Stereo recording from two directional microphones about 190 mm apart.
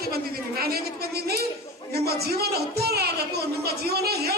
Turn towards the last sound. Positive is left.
turn(degrees=-55)  # may be behind; listen again after turning